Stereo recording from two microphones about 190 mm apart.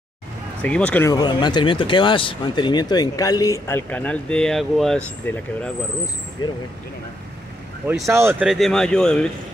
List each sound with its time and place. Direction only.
0.6 s speech: 5° left (ahead or behind)
1.1 s speech: 25° left (ahead or behind); by 5.7 s 5° left (ahead or behind)
6.4 s speech: 20° left (ahead or behind)
8.1 s speech: 10° right (ahead or behind)
8.5 s speech: centre (ahead or behind)